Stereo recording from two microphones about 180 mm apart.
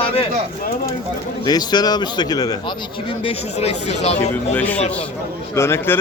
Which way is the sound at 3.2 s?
35° left (ahead or behind).